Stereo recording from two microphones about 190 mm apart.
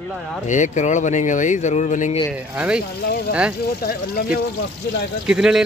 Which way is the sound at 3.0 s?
55° left (ahead or behind).